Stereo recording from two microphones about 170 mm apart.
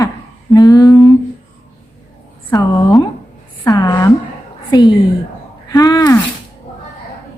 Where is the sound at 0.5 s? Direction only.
20° left (ahead or behind).